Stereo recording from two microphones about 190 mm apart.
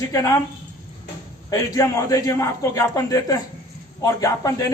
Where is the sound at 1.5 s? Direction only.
15° left (ahead or behind).